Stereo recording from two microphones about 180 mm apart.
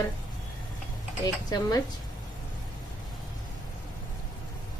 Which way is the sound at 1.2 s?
20° left (ahead or behind).